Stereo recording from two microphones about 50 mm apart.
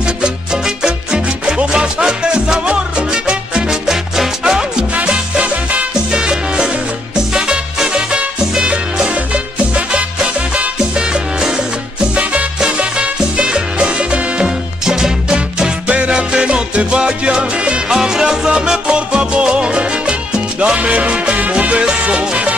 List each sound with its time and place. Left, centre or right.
0.0 s music: centre
4.9 s music: right